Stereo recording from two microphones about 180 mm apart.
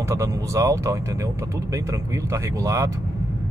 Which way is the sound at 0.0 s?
15° right (ahead or behind).